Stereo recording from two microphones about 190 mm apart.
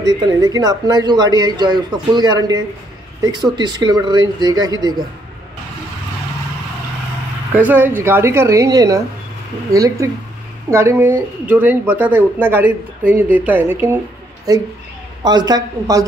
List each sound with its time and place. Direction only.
0.0 s speech: 20° right (ahead or behind)
7.5 s speech: 10° right (ahead or behind)